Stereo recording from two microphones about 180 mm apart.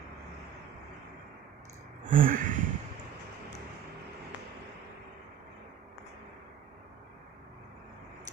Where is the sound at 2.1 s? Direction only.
50° right (ahead or behind).